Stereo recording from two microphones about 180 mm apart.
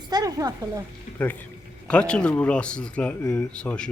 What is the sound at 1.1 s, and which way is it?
Speech, 10° left (ahead or behind).